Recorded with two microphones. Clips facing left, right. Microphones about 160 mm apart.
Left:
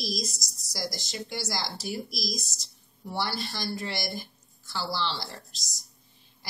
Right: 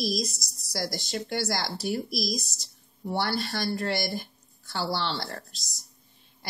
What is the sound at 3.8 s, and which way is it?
Speech, 60° right (ahead or behind).